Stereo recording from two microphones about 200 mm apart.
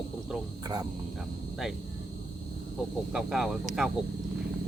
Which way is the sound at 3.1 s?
Centre (ahead or behind).